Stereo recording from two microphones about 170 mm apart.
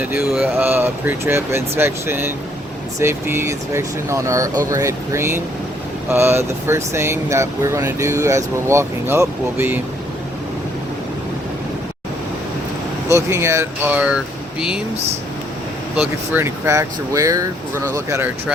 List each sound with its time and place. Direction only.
0.0 s speech: 10° right (ahead or behind)
13.1 s speech: 15° right (ahead or behind)
16.0 s speech: 10° right (ahead or behind)